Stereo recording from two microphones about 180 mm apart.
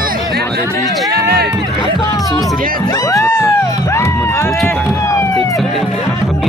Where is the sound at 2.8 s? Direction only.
20° left (ahead or behind).